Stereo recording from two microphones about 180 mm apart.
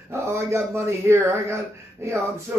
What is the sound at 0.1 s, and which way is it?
Speech, 15° right (ahead or behind).